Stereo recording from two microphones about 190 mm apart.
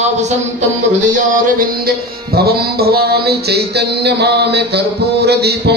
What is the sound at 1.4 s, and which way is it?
Music, 50° right (ahead or behind).